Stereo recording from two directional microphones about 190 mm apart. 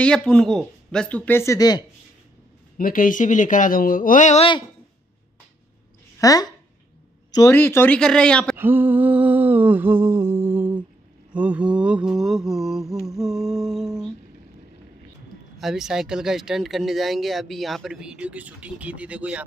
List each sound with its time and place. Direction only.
0.0 s speech: 5° left (ahead or behind); by 1.9 s 20° left (ahead or behind)
2.8 s speech: 45° left (ahead or behind)
6.1 s speech: 20° left (ahead or behind)
7.2 s a sound: 20° left (ahead or behind)
7.5 s speech: 10° left (ahead or behind)
8.5 s a sound: 10° right (ahead or behind)
11.3 s speech: 5° right (ahead or behind)
15.6 s speech: 5° right (ahead or behind)